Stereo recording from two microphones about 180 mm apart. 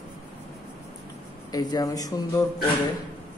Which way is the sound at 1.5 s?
20° left (ahead or behind).